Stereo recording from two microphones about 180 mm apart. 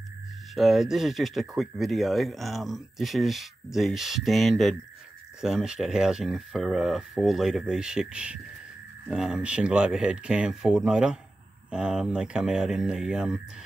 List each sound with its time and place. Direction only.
0.6 s speech: centre (ahead or behind)